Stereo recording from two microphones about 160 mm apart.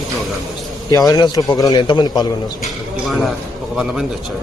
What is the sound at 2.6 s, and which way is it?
A man's voice, centre (ahead or behind).